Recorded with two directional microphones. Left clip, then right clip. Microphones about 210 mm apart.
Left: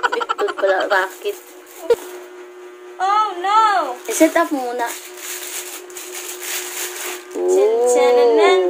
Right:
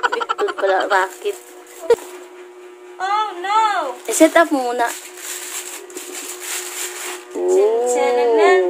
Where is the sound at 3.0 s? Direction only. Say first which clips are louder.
Left 3 dB; centre (ahead or behind).